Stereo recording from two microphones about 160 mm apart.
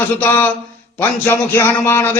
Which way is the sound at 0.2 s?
15° left (ahead or behind).